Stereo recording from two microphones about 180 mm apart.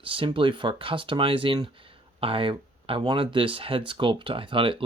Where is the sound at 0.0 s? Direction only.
30° right (ahead or behind).